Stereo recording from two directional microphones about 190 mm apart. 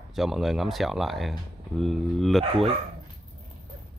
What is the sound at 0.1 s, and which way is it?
Speech, centre (ahead or behind).